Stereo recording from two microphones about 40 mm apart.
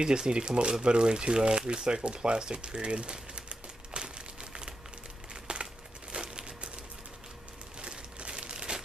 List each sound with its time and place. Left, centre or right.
0.0 s speech: right
2.0 s typewriter: right
5.3 s a sound: right
6.1 s crumpling: right
7.8 s crumpling: right